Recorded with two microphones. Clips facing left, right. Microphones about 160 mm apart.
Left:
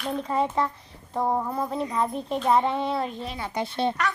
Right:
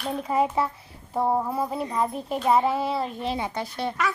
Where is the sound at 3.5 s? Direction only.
25° left (ahead or behind).